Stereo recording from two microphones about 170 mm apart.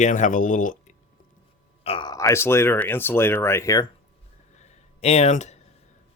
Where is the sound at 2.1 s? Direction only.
20° left (ahead or behind).